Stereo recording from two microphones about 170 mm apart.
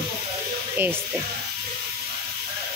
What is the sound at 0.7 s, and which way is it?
Music, 10° right (ahead or behind).